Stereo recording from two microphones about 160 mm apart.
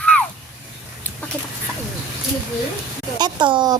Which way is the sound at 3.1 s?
30° right (ahead or behind).